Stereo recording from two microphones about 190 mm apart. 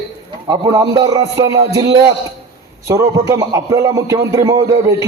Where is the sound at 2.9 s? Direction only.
15° right (ahead or behind).